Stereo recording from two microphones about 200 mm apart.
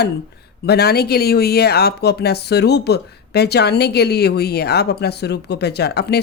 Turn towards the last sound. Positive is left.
turn(degrees=55)  # may be behind; listen again after turning